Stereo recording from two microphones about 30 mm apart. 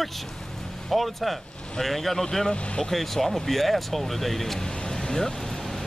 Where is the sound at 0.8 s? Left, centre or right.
Centre.